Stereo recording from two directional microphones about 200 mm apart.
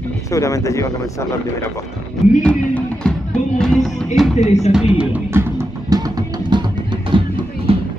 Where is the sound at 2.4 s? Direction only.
5° left (ahead or behind).